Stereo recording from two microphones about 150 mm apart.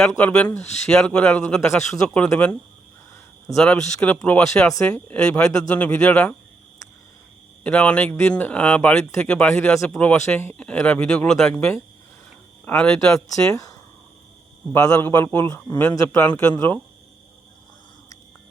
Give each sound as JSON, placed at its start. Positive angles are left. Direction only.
{"t": 0.2, "sound": "speech", "side_deg": 10}
{"t": 7.6, "sound": "speech", "side_deg": 10}
{"t": 13.3, "sound": "speech", "side_deg": 20}
{"t": 14.7, "sound": "speech", "side_deg": 20}